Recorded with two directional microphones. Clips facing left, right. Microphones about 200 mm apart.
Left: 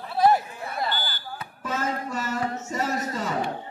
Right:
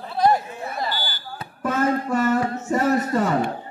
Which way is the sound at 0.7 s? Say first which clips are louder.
Even; 5° right (ahead or behind).